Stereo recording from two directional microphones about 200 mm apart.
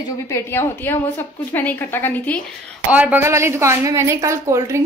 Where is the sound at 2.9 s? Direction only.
10° right (ahead or behind).